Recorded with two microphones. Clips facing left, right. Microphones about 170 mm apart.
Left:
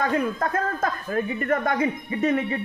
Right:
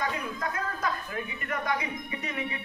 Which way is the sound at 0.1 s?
50° left (ahead or behind).